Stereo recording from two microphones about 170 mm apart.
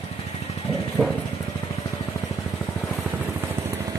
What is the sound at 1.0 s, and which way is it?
Vehicle, 5° right (ahead or behind).